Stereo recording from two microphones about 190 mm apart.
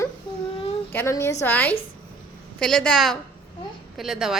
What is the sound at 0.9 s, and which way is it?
A woman's voice, 15° left (ahead or behind).